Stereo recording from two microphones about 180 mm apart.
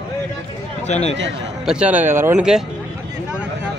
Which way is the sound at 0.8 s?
40° left (ahead or behind).